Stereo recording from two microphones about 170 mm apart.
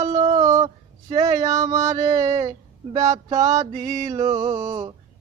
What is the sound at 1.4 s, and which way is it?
Music, 20° right (ahead or behind).